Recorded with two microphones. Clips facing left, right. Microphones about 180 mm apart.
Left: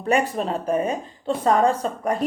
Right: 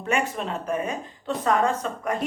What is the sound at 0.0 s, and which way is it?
Speech, 35° left (ahead or behind).